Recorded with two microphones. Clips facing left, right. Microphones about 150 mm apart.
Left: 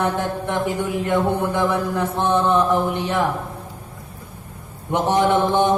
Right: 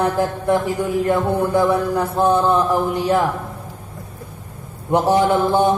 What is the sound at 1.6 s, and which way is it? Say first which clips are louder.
Mantra: right 3 dB; 35° right (ahead or behind).